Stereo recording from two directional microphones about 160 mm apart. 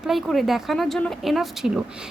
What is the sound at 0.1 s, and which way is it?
Speech, centre (ahead or behind).